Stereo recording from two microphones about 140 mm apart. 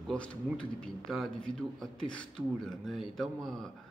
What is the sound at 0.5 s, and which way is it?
A man's voice, 5° left (ahead or behind).